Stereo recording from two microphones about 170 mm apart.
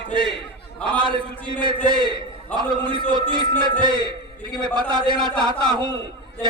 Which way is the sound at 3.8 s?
25° left (ahead or behind).